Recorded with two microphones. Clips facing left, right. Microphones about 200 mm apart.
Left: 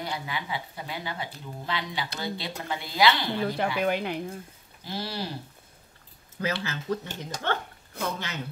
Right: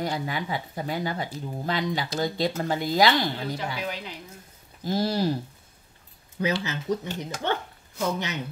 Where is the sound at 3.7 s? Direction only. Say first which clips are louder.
Left 7 dB; 60° left (ahead or behind).